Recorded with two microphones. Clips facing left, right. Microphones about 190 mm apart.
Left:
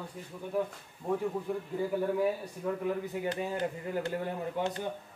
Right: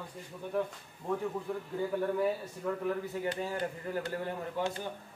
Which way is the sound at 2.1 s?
15° left (ahead or behind).